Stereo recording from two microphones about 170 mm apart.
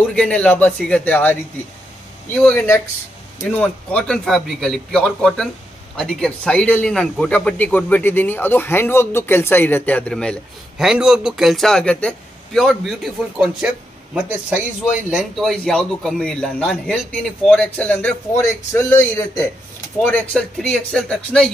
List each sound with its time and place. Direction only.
0.1 s a man's voice: 5° left (ahead or behind)
2.4 s a man's voice: 15° left (ahead or behind)